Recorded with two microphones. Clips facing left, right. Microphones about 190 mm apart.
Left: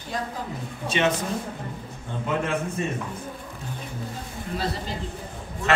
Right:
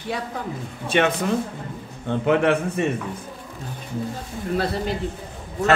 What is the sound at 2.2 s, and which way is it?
Speech, 70° right (ahead or behind).